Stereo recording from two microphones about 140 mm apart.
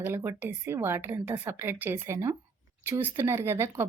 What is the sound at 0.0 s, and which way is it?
Speech, 15° right (ahead or behind).